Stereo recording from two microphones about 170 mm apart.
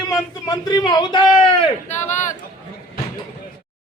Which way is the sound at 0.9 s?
25° left (ahead or behind).